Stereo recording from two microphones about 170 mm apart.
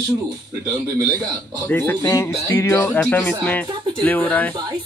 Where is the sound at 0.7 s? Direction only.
20° right (ahead or behind).